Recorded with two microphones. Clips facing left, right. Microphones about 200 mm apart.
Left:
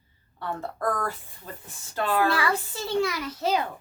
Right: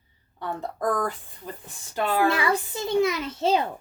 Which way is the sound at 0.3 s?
15° right (ahead or behind).